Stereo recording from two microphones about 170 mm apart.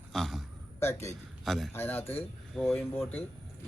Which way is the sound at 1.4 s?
Centre (ahead or behind).